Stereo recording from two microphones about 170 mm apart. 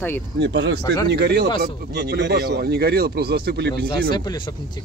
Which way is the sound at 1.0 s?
75° right (ahead or behind).